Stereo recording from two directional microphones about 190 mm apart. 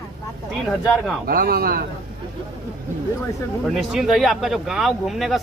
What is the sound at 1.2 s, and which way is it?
Speech, 50° right (ahead or behind).